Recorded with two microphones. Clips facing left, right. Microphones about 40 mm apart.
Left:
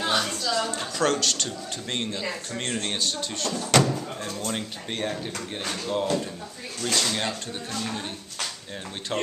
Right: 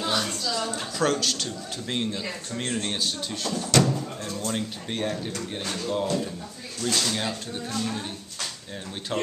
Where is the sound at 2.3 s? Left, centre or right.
Centre.